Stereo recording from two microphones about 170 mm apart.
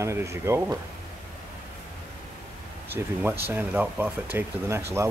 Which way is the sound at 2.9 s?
10° right (ahead or behind).